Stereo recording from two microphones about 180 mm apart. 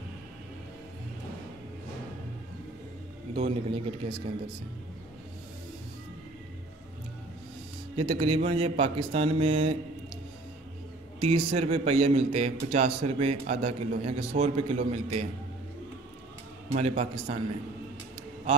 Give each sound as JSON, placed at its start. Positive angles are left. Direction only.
{"t": 3.3, "sound": "a man's voice", "side_deg": -35}
{"t": 7.9, "sound": "a man's voice", "side_deg": -30}
{"t": 11.1, "sound": "a man's voice", "side_deg": -35}
{"t": 16.7, "sound": "a man's voice", "side_deg": -35}